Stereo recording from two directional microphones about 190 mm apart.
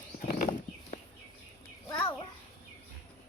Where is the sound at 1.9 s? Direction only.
20° left (ahead or behind).